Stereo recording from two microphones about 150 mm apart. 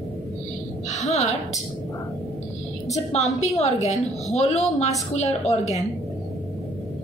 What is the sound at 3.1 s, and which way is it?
A woman's voice, 50° left (ahead or behind).